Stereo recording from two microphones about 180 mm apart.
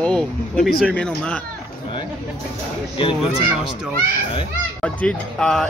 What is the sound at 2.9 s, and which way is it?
Speech, 30° left (ahead or behind).